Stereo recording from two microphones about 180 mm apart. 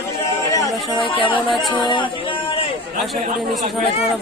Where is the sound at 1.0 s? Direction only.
30° left (ahead or behind).